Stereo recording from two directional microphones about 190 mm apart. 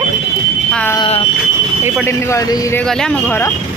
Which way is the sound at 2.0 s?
15° left (ahead or behind).